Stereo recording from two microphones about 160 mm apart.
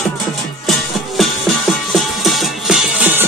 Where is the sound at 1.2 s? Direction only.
Centre (ahead or behind).